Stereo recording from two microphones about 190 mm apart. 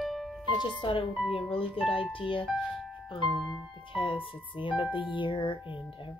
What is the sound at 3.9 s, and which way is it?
A woman's voice, 25° left (ahead or behind).